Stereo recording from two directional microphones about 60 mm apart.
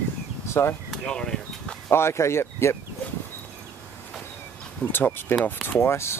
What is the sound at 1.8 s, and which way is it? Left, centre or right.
Speech, left.